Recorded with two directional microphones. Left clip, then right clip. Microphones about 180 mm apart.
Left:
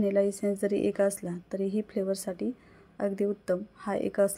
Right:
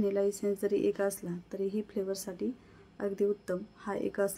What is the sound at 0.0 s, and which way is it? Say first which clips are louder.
Speech: left 4 dB; 20° left (ahead or behind).